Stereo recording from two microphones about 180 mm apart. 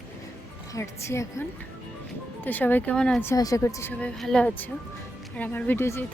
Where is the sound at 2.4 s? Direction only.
10° left (ahead or behind).